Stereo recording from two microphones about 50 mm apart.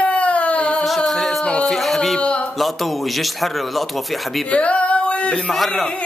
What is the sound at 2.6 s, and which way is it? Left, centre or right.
A man's voice, centre.